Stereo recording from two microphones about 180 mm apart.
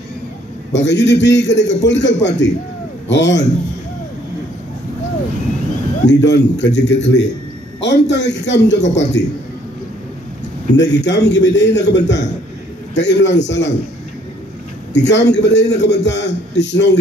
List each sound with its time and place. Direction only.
0.7 s a man's voice: 75° left (ahead or behind)
6.0 s a man's voice: 75° left (ahead or behind)
10.8 s a man's voice: 75° left (ahead or behind)
15.0 s a man's voice: 75° left (ahead or behind)